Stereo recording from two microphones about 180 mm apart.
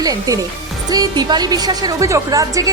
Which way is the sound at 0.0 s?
20° right (ahead or behind).